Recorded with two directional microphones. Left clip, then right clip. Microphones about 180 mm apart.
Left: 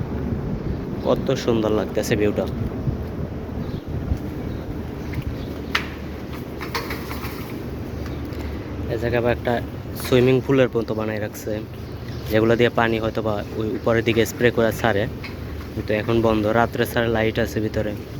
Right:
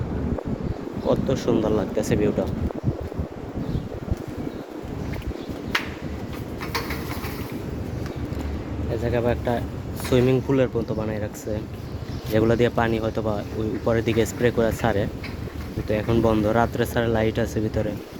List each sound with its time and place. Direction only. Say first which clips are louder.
1.0 s speech: left 2 dB; 10° right (ahead or behind)
9.0 s speech: left 3 dB; 10° right (ahead or behind)